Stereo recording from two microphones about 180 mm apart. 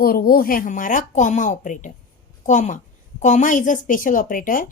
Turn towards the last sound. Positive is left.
turn(degrees=50)  # may be behind; listen again after turning